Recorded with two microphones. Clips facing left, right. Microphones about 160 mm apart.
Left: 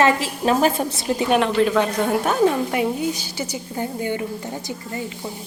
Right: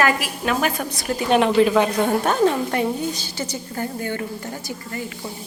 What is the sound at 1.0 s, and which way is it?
Speech, 20° left (ahead or behind).